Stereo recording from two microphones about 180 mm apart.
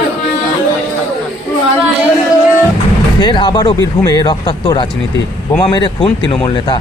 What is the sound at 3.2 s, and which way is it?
Speech, 25° left (ahead or behind).